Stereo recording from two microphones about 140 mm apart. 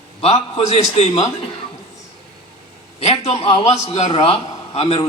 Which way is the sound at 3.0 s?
45° left (ahead or behind).